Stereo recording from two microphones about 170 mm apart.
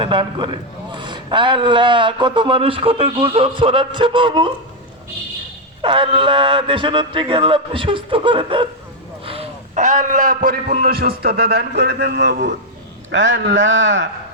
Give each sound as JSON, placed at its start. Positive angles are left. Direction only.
{"t": 0.0, "sound": "a man's voice", "side_deg": -30}
{"t": 5.8, "sound": "a man's voice", "side_deg": -30}